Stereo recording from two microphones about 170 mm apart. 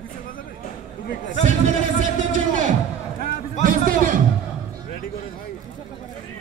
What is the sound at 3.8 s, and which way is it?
Music, 55° right (ahead or behind).